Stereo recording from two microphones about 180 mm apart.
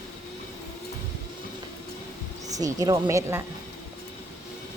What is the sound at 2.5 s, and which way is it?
Speech, 20° right (ahead or behind).